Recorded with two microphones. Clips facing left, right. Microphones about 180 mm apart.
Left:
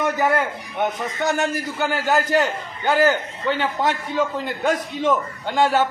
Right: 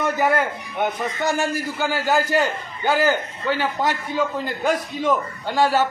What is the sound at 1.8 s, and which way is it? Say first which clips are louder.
A man's voice: even; 5° right (ahead or behind).